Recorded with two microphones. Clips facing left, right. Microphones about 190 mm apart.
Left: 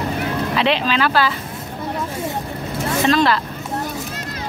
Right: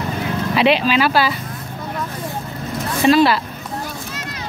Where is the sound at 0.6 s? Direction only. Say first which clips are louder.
Right 4 dB; 10° right (ahead or behind).